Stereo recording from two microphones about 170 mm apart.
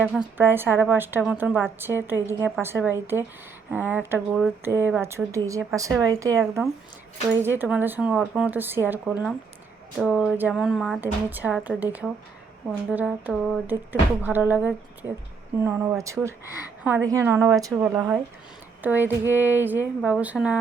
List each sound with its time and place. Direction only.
0.0 s speech: 10° right (ahead or behind)
6.4 s speech: 10° right (ahead or behind)
17.8 s speech: 10° right (ahead or behind)